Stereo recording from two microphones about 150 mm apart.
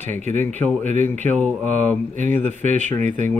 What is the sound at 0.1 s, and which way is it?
Speech, 55° right (ahead or behind).